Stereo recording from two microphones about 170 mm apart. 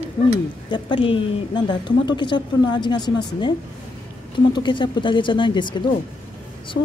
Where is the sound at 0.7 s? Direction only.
30° left (ahead or behind).